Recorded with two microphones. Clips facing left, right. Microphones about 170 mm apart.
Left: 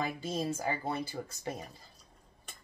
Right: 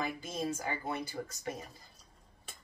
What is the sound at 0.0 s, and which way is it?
Speech, 30° left (ahead or behind).